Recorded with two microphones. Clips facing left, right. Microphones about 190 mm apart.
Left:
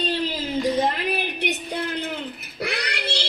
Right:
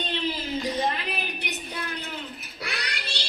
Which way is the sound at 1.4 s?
65° left (ahead or behind).